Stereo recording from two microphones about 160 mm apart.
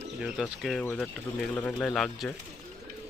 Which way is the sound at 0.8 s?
10° left (ahead or behind).